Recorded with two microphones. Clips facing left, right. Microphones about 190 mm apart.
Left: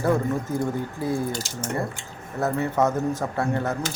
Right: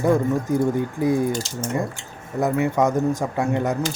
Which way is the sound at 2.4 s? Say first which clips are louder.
Right 3 dB; 15° right (ahead or behind).